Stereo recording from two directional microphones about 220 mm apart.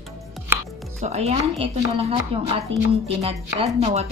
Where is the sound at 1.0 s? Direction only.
30° right (ahead or behind).